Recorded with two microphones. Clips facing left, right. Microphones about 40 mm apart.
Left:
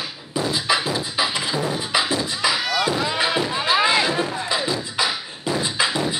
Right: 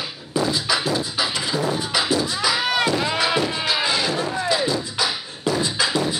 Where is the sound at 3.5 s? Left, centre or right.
Left.